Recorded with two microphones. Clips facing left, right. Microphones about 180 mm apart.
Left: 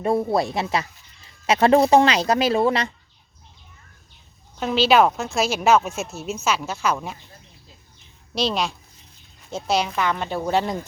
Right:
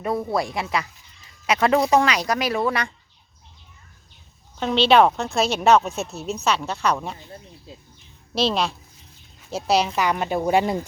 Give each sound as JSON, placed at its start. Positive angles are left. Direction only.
{"t": 0.0, "sound": "speech", "side_deg": 25}
{"t": 4.6, "sound": "a woman's voice", "side_deg": 5}
{"t": 8.4, "sound": "a woman's voice", "side_deg": 0}
{"t": 9.9, "sound": "a woman's voice", "side_deg": -15}